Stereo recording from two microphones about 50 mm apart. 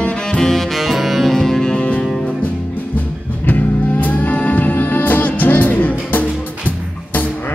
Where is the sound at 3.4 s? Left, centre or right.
Left.